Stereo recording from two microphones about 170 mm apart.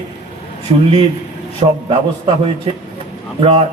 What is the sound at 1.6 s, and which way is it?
A man's voice, 35° right (ahead or behind).